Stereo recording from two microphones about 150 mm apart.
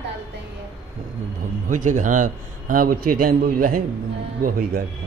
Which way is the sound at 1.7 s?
60° right (ahead or behind).